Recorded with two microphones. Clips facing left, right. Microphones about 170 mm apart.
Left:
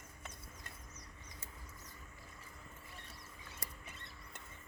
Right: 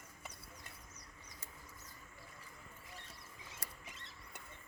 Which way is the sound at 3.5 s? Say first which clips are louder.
Left 2 dB; 90° right.